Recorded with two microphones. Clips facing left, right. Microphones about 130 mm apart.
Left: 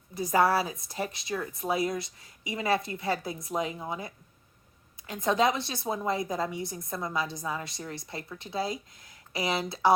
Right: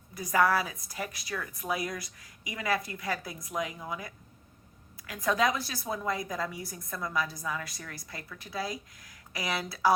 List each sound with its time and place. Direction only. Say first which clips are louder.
0.1 s a woman's voice: left 2 dB; 30° left (ahead or behind)